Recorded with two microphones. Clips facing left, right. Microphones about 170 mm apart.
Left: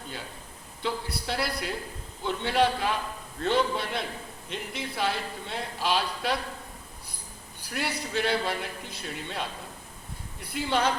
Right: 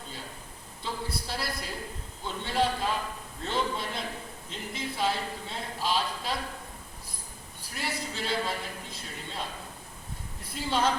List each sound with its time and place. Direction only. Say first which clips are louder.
0.8 s a man's voice: left 3 dB; 65° left (ahead or behind)
7.6 s a man's voice: left 3 dB; 65° left (ahead or behind)
10.5 s a man's voice: left 2 dB; 65° left (ahead or behind)